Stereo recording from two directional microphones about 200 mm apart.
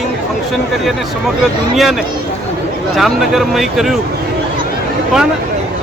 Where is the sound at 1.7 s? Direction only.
Centre (ahead or behind).